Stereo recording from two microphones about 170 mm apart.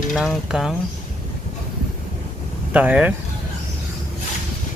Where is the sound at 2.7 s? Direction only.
10° right (ahead or behind).